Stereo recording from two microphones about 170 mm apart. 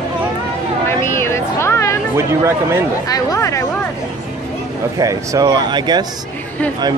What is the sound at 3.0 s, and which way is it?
Chatter, 20° left (ahead or behind).